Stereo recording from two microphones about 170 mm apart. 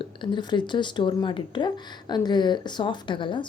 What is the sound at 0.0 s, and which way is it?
Speech, 30° left (ahead or behind).